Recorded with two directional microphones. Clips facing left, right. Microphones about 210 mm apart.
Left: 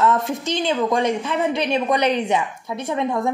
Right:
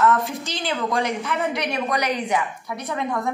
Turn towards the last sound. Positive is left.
turn(degrees=25)  # may be behind; listen again after turning